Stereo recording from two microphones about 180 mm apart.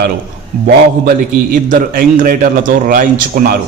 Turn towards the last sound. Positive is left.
turn(degrees=-55)  # may be behind; listen again after turning